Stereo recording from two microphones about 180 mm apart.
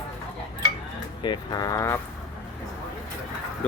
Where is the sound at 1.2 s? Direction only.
25° left (ahead or behind).